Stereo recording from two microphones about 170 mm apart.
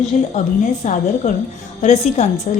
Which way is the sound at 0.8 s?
45° left (ahead or behind).